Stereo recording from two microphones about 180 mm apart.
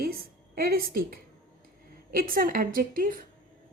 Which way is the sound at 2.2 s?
50° right (ahead or behind).